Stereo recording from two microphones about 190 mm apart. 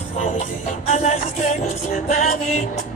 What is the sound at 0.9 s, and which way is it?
Music, 40° left (ahead or behind).